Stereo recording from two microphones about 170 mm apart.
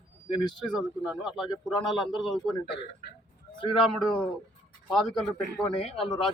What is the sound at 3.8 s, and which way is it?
Speech, 5° left (ahead or behind).